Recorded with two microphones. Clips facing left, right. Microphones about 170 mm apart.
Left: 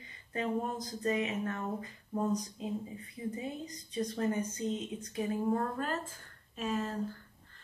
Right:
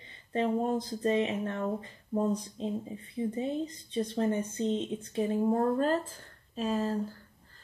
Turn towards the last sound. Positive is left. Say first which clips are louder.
# right 5 dB
turn(degrees=-35)  # may be behind; listen again after turning